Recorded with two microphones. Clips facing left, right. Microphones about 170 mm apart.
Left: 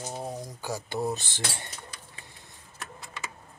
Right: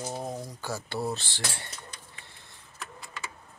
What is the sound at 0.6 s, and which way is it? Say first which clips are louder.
Speech: left 2 dB; 15° left (ahead or behind).